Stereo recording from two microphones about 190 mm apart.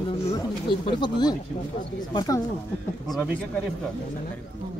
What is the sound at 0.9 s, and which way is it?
Speech, 25° left (ahead or behind).